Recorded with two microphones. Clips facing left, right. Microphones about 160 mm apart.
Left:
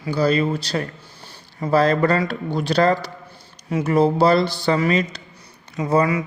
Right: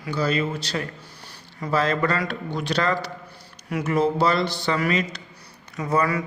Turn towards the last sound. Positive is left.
turn(degrees=25)  # may be behind; listen again after turning